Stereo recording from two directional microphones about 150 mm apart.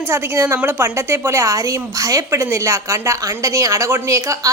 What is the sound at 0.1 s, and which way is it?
Speech, 15° right (ahead or behind).